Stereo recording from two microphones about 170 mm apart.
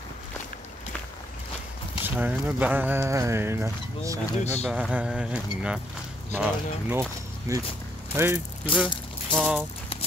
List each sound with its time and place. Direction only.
2.0 s speech: 10° right (ahead or behind)
4.6 s speech: 5° right (ahead or behind)
6.9 s speech: 15° right (ahead or behind)